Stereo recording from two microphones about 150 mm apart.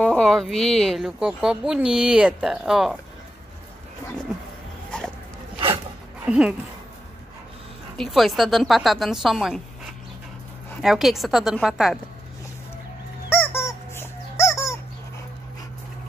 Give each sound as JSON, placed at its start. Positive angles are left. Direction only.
{"t": 0.0, "sound": "speech", "side_deg": 5}
{"t": 4.9, "sound": "dog", "side_deg": 5}
{"t": 6.2, "sound": "speech", "side_deg": -5}
{"t": 8.0, "sound": "speech", "side_deg": 0}
{"t": 10.8, "sound": "speech", "side_deg": 0}
{"t": 13.4, "sound": "music", "side_deg": 15}